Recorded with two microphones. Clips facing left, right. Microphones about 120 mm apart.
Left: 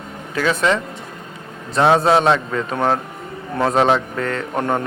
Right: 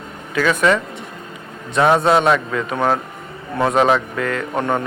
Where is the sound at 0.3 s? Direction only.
30° left (ahead or behind).